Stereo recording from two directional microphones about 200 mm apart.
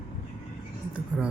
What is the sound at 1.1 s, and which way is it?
Speech, 5° right (ahead or behind).